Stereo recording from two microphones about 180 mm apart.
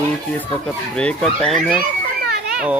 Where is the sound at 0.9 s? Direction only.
5° left (ahead or behind).